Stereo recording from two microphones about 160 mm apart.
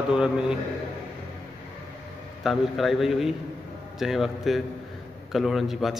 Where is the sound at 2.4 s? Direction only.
Centre (ahead or behind).